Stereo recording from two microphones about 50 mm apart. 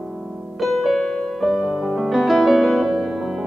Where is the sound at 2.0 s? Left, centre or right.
Centre.